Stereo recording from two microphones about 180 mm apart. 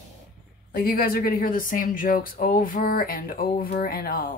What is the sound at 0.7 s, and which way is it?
Speech, 55° left (ahead or behind).